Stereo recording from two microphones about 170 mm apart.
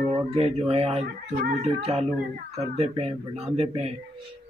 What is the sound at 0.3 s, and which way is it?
Speech, 40° right (ahead or behind).